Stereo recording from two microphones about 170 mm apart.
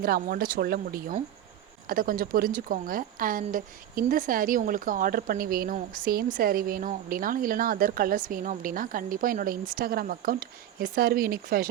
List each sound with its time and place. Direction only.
0.0 s speech: 60° right (ahead or behind)